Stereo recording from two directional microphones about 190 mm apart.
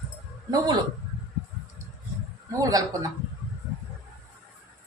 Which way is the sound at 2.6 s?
20° right (ahead or behind).